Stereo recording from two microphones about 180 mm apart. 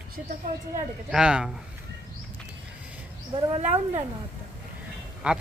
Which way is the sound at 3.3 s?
30° right (ahead or behind).